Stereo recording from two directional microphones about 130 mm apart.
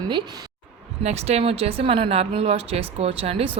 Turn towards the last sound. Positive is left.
turn(degrees=-45)  # may be behind; listen again after turning